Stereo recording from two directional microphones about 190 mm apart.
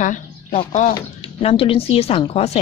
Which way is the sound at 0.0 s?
40° left (ahead or behind).